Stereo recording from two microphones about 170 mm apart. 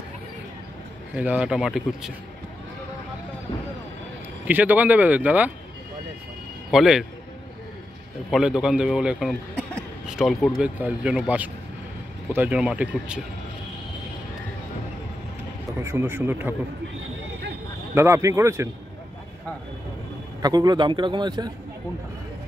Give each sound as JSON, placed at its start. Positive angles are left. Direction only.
{"t": 1.1, "sound": "a man's voice", "side_deg": -10}
{"t": 4.5, "sound": "speech", "side_deg": -10}
{"t": 6.7, "sound": "a man's voice", "side_deg": 0}
{"t": 8.3, "sound": "a man's voice", "side_deg": -5}
{"t": 15.8, "sound": "speech", "side_deg": -15}
{"t": 17.9, "sound": "speech", "side_deg": -15}
{"t": 20.4, "sound": "a man's voice", "side_deg": -25}